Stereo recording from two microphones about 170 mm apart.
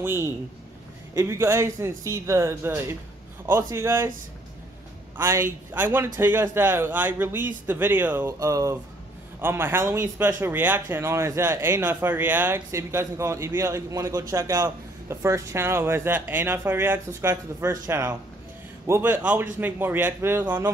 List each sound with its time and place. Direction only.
0.0 s speech: 15° right (ahead or behind)
5.1 s speech: 15° right (ahead or behind)